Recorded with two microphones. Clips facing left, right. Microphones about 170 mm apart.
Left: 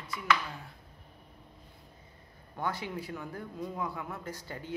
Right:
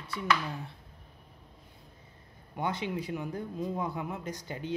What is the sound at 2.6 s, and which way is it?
Speech, 20° right (ahead or behind).